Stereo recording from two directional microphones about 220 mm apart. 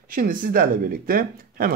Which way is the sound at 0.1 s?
40° right (ahead or behind).